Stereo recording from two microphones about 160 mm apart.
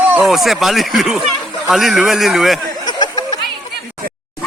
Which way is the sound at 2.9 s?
25° left (ahead or behind).